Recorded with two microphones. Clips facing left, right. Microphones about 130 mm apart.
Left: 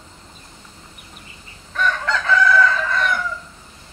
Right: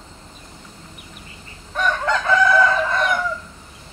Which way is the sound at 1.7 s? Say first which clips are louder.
Right 1 dB; 20° right (ahead or behind).